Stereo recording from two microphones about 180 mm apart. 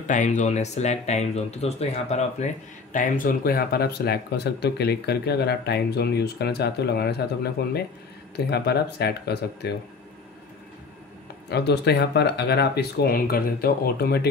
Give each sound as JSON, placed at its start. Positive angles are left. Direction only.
{"t": 0.0, "sound": "speech", "side_deg": 45}
{"t": 2.9, "sound": "speech", "side_deg": 45}
{"t": 11.4, "sound": "speech", "side_deg": 65}